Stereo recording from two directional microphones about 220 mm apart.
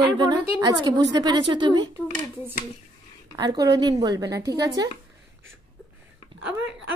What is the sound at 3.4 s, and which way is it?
A woman's voice, 15° right (ahead or behind).